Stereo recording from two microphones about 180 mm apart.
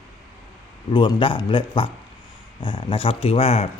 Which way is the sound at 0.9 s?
25° left (ahead or behind).